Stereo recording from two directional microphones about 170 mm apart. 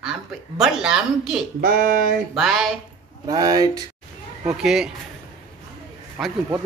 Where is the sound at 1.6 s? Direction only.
55° right (ahead or behind).